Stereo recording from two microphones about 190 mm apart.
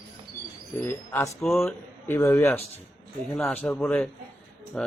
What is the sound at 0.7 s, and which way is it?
A man's voice, 15° left (ahead or behind).